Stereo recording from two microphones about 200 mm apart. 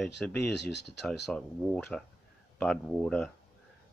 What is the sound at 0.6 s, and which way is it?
Speech, 60° left (ahead or behind).